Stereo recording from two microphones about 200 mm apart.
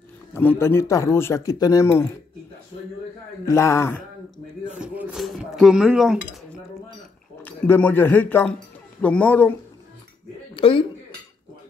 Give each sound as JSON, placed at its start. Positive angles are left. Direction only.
{"t": 0.3, "sound": "speech", "side_deg": 10}
{"t": 3.4, "sound": "speech", "side_deg": 15}
{"t": 4.7, "sound": "a sound", "side_deg": -5}
{"t": 7.4, "sound": "speech", "side_deg": 10}
{"t": 10.5, "sound": "speech", "side_deg": 25}